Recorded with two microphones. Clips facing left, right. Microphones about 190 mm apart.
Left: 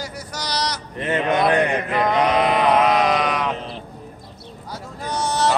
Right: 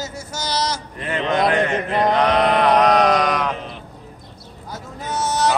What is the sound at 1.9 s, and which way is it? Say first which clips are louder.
Male singing: right 2 dB; 35° right (ahead or behind).